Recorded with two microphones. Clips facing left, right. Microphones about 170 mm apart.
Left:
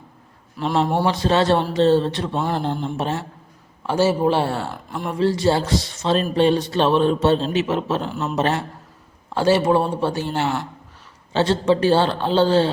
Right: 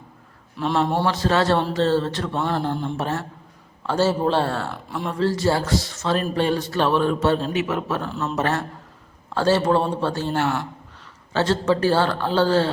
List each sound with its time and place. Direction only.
0.9 s a man's voice: 15° left (ahead or behind)